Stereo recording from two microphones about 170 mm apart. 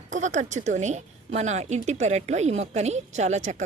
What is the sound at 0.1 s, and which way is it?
A woman's voice, 45° right (ahead or behind).